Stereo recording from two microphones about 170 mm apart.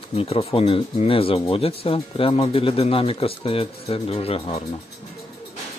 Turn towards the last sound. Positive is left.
turn(degrees=35)  # may be behind; listen again after turning